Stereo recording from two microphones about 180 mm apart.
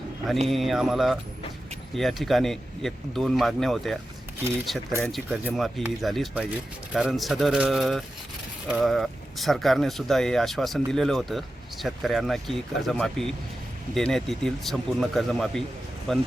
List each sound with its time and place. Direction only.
0.3 s speech: centre (ahead or behind)
4.9 s speech: 15° right (ahead or behind)
5.1 s speech: centre (ahead or behind)